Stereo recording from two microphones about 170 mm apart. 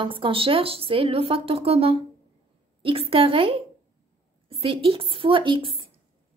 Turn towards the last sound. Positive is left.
turn(degrees=-30)  # may be behind; listen again after turning